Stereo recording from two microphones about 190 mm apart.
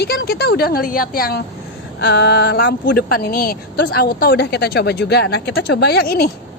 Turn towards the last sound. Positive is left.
turn(degrees=55)  # may be behind; listen again after turning